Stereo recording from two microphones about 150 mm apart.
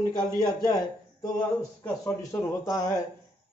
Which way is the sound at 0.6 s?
65° left (ahead or behind).